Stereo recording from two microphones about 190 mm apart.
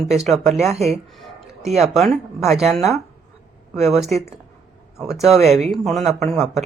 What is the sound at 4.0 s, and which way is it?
Speech, centre (ahead or behind).